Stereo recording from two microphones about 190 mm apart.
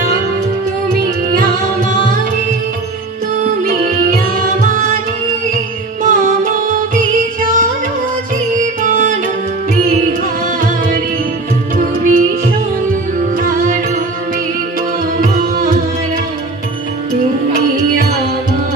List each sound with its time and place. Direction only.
3.6 s music: 50° right (ahead or behind)
6.0 s music: 45° right (ahead or behind)
11.7 s music: 45° right (ahead or behind)
15.1 s music: 50° right (ahead or behind)